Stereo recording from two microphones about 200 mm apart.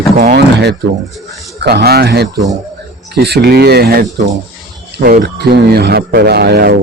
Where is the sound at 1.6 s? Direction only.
55° right (ahead or behind).